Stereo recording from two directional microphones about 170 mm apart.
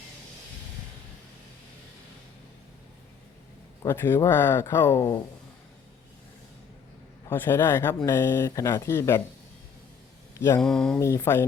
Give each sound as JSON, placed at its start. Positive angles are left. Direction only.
{"t": 3.8, "sound": "speech", "side_deg": 15}
{"t": 7.3, "sound": "speech", "side_deg": 15}
{"t": 10.3, "sound": "mantra", "side_deg": 15}
{"t": 10.6, "sound": "speech", "side_deg": 5}
{"t": 11.0, "sound": "speech", "side_deg": 15}